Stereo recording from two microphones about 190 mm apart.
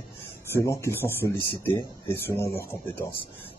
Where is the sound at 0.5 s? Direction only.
15° left (ahead or behind).